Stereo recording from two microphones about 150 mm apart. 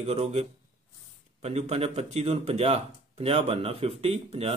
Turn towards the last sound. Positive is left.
turn(degrees=-45)  # may be behind; listen again after turning